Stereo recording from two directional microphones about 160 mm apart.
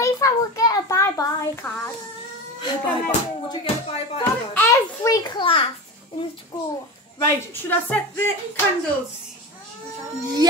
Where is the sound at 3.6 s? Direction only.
40° left (ahead or behind).